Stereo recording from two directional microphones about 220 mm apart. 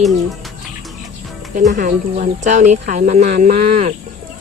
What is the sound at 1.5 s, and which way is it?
Speech, 35° right (ahead or behind).